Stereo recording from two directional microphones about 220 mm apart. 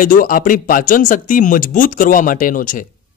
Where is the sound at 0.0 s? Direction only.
40° left (ahead or behind).